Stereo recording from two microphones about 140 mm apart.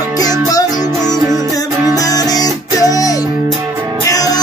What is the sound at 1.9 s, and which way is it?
Music, 25° left (ahead or behind).